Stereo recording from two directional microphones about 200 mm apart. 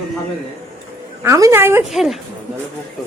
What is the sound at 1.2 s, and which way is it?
Speech, 15° right (ahead or behind).